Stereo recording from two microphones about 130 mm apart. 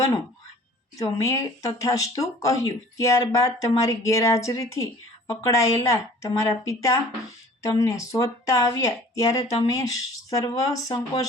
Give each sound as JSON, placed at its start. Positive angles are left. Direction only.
{"t": 0.9, "sound": "speech", "side_deg": 25}